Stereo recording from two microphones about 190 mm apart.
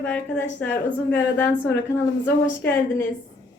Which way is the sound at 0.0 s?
10° left (ahead or behind).